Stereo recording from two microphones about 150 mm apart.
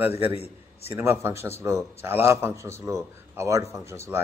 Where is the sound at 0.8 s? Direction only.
15° right (ahead or behind).